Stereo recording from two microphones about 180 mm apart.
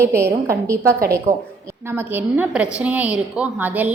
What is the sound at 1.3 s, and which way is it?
Speech, 45° right (ahead or behind).